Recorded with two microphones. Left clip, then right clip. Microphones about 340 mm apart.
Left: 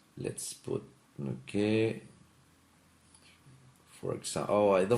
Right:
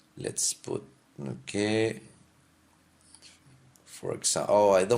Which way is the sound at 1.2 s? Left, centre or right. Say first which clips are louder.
Right 2 dB; right.